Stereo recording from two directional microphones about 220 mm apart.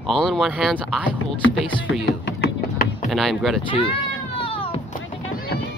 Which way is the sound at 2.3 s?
40° left (ahead or behind).